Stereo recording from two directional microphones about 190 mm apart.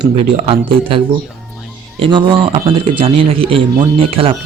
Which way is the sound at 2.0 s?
25° right (ahead or behind).